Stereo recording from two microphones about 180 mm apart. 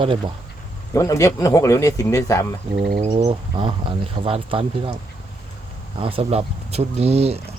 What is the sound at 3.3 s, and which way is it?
Speech, 30° right (ahead or behind).